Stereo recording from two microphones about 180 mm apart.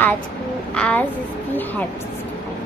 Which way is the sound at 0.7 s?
5° left (ahead or behind).